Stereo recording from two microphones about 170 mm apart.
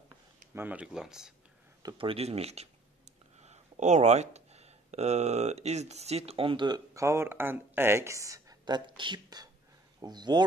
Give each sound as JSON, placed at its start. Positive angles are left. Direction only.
{"t": 0.6, "sound": "speech", "side_deg": -10}
{"t": 1.8, "sound": "speech", "side_deg": -25}